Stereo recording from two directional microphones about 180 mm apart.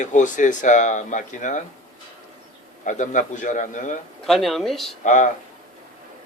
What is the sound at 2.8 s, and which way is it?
A man's voice, 45° left (ahead or behind).